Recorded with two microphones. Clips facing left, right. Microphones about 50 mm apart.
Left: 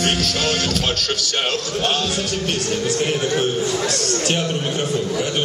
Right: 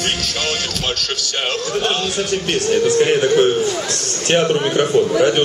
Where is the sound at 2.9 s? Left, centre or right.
Right.